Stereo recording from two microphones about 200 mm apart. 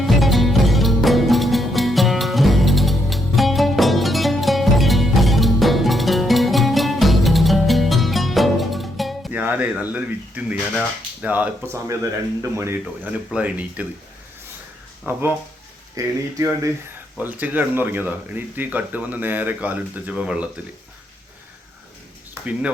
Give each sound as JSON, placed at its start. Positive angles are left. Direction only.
{"t": 0.2, "sound": "music", "side_deg": 0}
{"t": 12.4, "sound": "speech", "side_deg": -15}
{"t": 15.0, "sound": "speech", "side_deg": -10}